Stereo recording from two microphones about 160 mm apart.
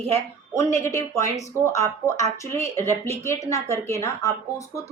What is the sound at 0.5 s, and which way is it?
A woman's voice, 20° left (ahead or behind).